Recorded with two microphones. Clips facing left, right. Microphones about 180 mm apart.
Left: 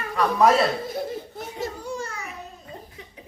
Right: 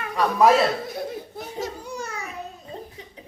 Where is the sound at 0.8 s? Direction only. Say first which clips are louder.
Left 1 dB; centre (ahead or behind).